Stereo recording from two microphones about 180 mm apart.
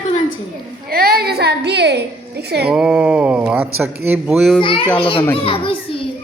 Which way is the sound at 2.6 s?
5° right (ahead or behind).